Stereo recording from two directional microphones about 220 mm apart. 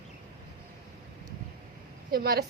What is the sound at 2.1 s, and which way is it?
Speech, 45° right (ahead or behind).